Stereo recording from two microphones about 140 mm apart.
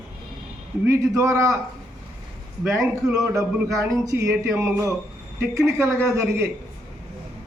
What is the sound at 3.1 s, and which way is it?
Speech, 25° right (ahead or behind).